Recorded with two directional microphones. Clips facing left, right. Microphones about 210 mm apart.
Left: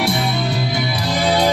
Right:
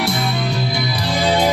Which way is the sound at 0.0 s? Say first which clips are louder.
Left 1 dB; centre (ahead or behind).